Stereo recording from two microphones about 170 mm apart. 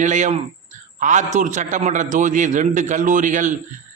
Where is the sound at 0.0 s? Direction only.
45° right (ahead or behind).